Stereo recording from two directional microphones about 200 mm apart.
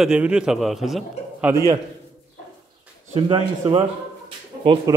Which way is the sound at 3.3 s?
25° right (ahead or behind).